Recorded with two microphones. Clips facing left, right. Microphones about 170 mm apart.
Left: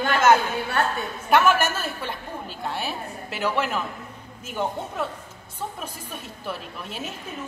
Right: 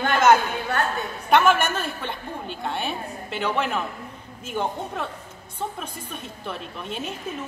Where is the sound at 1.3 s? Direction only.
5° left (ahead or behind).